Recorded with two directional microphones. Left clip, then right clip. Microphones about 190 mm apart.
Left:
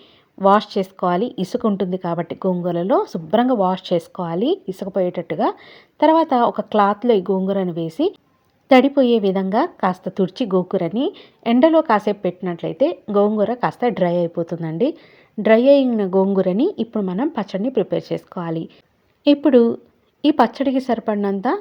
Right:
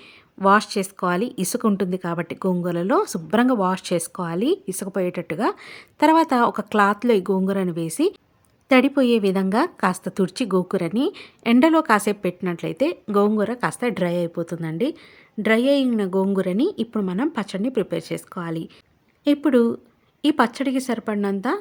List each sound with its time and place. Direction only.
0.3 s a woman's voice: 15° right (ahead or behind)